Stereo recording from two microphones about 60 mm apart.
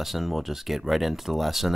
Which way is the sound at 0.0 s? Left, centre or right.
Centre.